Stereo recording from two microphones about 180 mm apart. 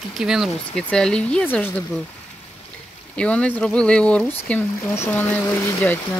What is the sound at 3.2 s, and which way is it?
Speech, 5° left (ahead or behind).